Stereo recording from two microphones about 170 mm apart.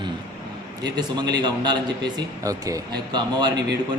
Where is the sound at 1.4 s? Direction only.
25° right (ahead or behind).